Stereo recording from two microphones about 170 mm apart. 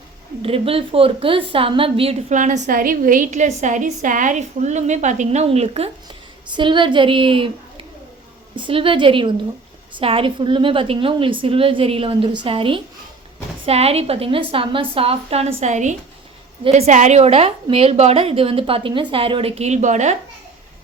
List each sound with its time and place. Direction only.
0.4 s a woman's voice: 35° right (ahead or behind)
2.3 s a woman's voice: 45° right (ahead or behind)